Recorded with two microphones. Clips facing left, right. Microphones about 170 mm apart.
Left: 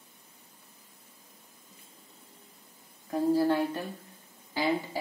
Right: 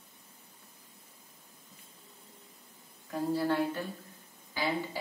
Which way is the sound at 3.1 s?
25° left (ahead or behind).